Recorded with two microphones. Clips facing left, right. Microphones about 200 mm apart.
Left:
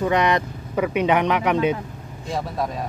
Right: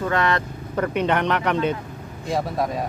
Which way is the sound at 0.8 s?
5° left (ahead or behind).